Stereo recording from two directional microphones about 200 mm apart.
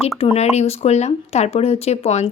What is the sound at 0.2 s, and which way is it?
A woman's voice, 30° left (ahead or behind).